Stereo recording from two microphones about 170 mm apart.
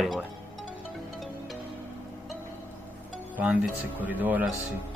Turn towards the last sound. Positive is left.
turn(degrees=-10)  # may be behind; listen again after turning